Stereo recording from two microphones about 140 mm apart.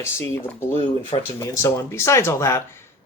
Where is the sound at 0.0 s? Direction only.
20° left (ahead or behind).